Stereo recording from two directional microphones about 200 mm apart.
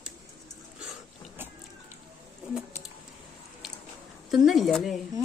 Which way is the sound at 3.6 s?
Centre (ahead or behind).